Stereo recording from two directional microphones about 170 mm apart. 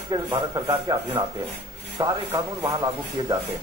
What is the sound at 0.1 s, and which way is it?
Speech, 25° right (ahead or behind).